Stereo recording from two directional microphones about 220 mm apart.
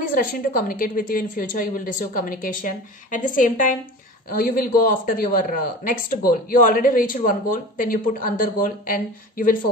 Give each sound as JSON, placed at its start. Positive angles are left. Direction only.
{"t": 0.0, "sound": "speech", "side_deg": 40}